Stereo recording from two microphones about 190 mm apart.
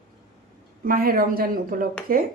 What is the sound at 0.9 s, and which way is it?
A woman's voice, 50° right (ahead or behind).